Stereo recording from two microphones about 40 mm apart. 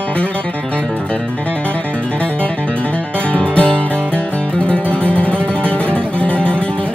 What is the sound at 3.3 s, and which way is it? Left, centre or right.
Music, left.